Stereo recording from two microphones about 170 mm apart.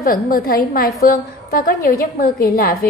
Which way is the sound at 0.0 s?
55° left (ahead or behind).